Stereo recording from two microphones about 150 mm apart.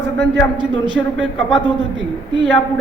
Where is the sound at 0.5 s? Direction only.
30° right (ahead or behind).